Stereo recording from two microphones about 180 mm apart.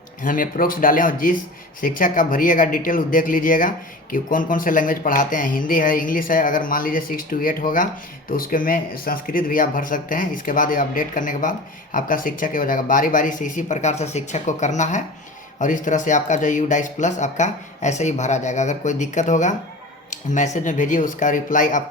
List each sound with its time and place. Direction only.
0.2 s speech: 50° left (ahead or behind)